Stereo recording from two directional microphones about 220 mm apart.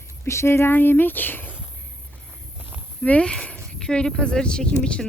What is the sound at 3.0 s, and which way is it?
Speech, 5° left (ahead or behind).